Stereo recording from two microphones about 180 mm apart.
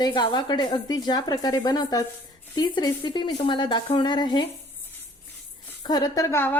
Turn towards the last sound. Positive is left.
turn(degrees=15)  # may be behind; listen again after turning